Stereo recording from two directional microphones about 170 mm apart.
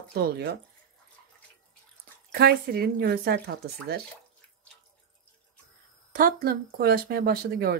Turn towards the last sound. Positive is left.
turn(degrees=-65)  # may be behind; listen again after turning